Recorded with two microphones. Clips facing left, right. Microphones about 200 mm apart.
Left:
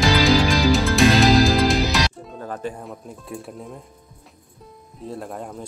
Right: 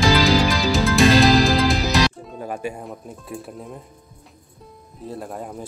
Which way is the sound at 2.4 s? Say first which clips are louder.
Right 1 dB; 10° right (ahead or behind).